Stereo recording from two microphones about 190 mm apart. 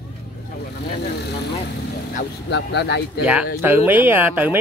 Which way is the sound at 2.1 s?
60° left (ahead or behind).